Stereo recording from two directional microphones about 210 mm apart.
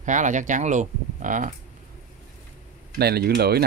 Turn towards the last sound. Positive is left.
turn(degrees=-50)  # may be behind; listen again after turning